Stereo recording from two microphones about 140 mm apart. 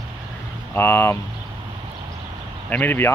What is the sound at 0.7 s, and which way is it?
Speech, 20° left (ahead or behind).